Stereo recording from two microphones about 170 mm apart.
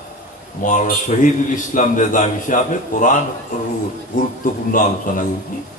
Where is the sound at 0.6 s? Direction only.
50° left (ahead or behind).